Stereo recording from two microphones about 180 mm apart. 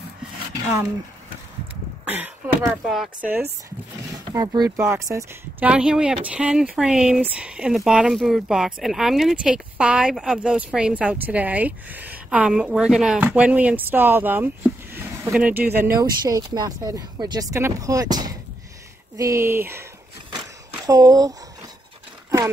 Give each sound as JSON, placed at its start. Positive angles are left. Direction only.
{"t": 2.0, "sound": "speech", "side_deg": -10}